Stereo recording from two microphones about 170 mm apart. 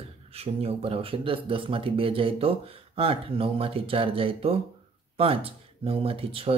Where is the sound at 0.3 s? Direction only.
35° right (ahead or behind).